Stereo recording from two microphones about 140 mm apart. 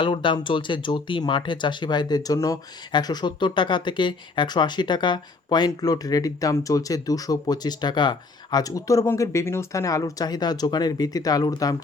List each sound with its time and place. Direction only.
0.0 s speech: 35° left (ahead or behind)